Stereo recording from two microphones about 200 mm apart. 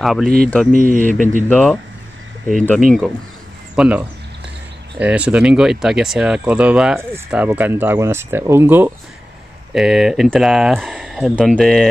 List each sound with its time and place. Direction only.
0.0 s speech: centre (ahead or behind)
0.7 s speech: 45° right (ahead or behind)
1.5 s speech: 5° left (ahead or behind)
3.7 s speech: 5° right (ahead or behind)